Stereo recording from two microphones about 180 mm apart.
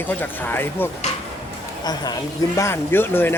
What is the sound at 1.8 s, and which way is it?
Speech, 20° left (ahead or behind).